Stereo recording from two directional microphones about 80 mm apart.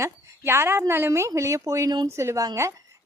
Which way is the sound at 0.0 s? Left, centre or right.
Right.